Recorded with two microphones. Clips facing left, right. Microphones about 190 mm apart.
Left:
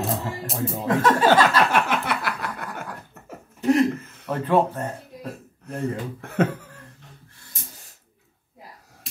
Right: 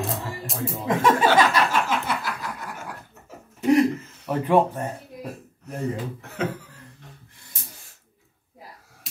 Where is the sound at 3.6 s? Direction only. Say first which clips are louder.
Right 1 dB; 15° right (ahead or behind).